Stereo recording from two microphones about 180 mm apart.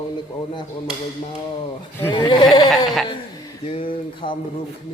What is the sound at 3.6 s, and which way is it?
Speech, 30° left (ahead or behind).